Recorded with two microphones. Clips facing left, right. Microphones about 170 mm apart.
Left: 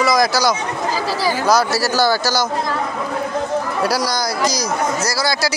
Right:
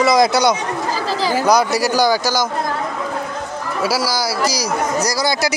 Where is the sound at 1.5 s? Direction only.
20° right (ahead or behind).